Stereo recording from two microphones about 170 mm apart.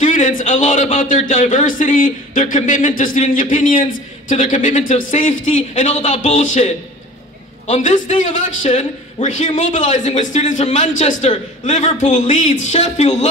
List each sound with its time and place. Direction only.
0.0 s a man's voice: 50° left (ahead or behind)